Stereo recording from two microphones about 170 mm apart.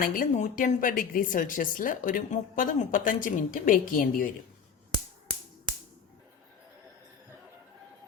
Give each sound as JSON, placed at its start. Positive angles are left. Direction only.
{"t": 0.0, "sound": "a woman's voice", "side_deg": 55}